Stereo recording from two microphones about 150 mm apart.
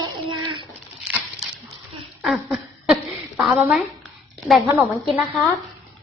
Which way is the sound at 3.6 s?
5° right (ahead or behind).